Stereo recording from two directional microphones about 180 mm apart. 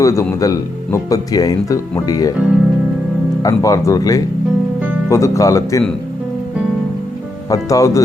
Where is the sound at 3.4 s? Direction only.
20° left (ahead or behind).